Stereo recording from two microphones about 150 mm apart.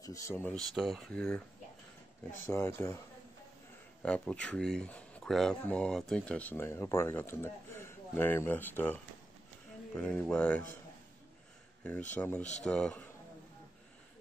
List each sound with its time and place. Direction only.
0.0 s speech: 20° left (ahead or behind)
0.6 s speech: centre (ahead or behind)
2.5 s speech: 15° left (ahead or behind)
4.0 s speech: 5° left (ahead or behind)
12.1 s speech: 10° left (ahead or behind)